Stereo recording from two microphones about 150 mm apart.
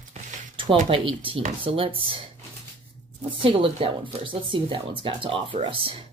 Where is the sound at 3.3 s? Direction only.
35° right (ahead or behind).